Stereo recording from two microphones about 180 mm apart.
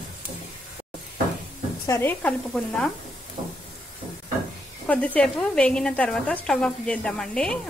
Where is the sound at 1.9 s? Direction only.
10° left (ahead or behind).